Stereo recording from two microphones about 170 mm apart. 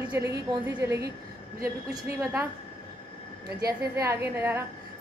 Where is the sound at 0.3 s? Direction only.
15° right (ahead or behind).